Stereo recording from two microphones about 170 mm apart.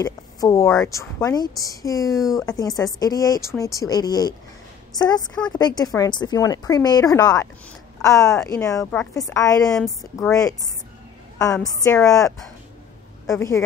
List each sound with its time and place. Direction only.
0.0 s speech: 20° left (ahead or behind)